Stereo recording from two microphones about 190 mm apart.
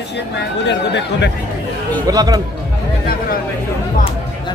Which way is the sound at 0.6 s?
65° left (ahead or behind).